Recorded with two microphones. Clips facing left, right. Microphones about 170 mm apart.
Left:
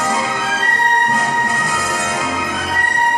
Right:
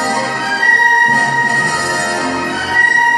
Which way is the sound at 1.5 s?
70° right (ahead or behind).